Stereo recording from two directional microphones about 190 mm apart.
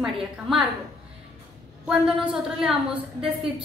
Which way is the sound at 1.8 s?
5° right (ahead or behind).